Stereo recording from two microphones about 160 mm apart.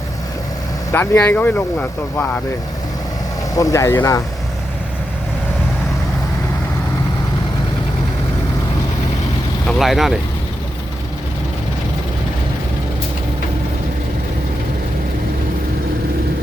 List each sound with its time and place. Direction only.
0.9 s speech: 15° left (ahead or behind)
3.5 s speech: 20° left (ahead or behind)
9.6 s speech: centre (ahead or behind)